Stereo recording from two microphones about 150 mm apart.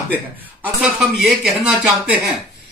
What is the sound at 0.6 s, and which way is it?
Speech, 5° right (ahead or behind).